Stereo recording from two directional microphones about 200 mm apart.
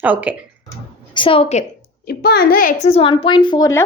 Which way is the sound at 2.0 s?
50° left (ahead or behind).